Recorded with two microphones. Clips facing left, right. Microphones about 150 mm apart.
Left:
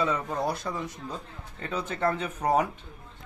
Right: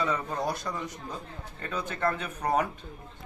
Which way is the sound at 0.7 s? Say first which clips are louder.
Left 2 dB; 10° left (ahead or behind).